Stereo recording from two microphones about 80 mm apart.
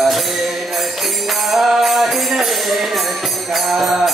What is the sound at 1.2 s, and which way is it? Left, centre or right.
Music, centre.